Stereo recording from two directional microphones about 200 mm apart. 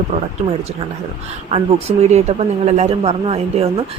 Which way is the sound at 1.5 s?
30° right (ahead or behind).